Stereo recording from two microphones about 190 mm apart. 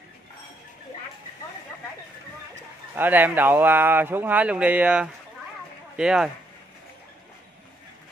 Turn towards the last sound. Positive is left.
turn(degrees=-5)  # may be behind; listen again after turning